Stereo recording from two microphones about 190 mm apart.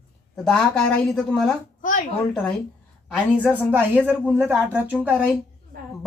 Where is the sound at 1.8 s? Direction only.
45° left (ahead or behind).